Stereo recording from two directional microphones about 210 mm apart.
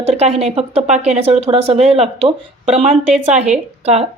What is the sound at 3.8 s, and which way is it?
Speech, 30° right (ahead or behind).